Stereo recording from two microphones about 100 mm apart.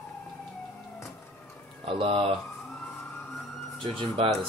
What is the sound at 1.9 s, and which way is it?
Speech, 60° right (ahead or behind).